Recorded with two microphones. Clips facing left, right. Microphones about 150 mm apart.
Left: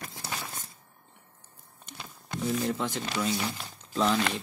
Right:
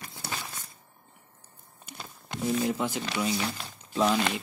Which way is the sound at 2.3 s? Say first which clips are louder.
Right 1 dB; 15° right (ahead or behind).